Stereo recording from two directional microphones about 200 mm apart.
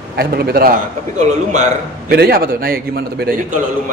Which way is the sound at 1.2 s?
35° right (ahead or behind).